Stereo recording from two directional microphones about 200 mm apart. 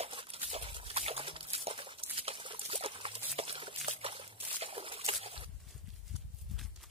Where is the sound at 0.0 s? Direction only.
30° right (ahead or behind).